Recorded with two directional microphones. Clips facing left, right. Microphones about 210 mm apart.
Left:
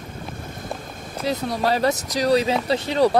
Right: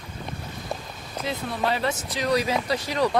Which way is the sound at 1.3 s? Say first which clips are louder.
Left 5 dB; 40° left (ahead or behind).